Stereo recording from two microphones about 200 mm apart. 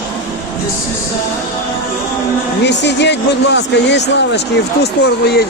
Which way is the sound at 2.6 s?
60° left (ahead or behind).